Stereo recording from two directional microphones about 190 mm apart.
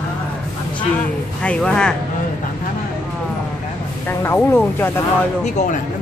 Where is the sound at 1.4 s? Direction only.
5° left (ahead or behind).